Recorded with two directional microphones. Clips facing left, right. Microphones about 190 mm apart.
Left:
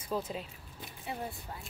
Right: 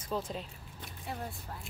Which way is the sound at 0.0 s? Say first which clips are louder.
Left 1 dB; 5° left (ahead or behind).